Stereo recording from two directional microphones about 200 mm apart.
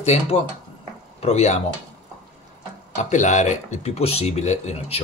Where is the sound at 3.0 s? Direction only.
35° left (ahead or behind).